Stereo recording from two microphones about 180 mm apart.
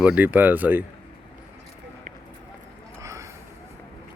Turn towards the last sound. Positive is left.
turn(degrees=-15)  # may be behind; listen again after turning